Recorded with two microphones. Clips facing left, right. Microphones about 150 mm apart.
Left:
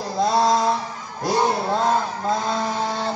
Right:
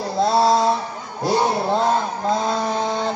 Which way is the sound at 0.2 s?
5° right (ahead or behind).